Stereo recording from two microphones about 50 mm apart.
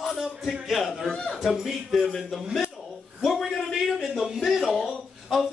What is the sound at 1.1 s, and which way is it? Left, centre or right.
Speech, centre.